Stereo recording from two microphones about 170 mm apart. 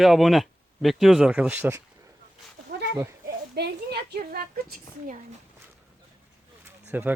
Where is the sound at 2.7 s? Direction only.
75° right (ahead or behind).